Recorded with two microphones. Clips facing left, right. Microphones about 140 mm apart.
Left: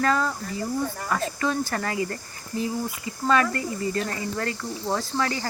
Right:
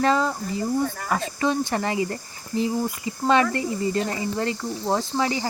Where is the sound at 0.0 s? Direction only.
25° right (ahead or behind).